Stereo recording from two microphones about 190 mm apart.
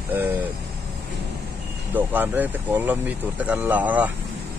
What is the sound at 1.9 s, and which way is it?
Speech, 10° right (ahead or behind).